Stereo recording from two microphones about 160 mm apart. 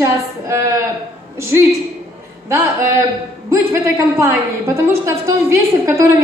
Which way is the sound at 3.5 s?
15° right (ahead or behind).